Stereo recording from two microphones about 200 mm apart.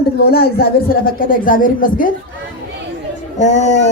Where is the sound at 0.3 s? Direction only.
50° left (ahead or behind).